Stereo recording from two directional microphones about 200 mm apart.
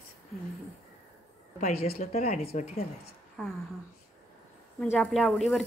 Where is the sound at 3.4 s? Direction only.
5° left (ahead or behind).